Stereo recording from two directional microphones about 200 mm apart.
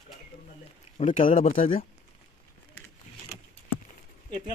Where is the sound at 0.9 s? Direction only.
30° left (ahead or behind).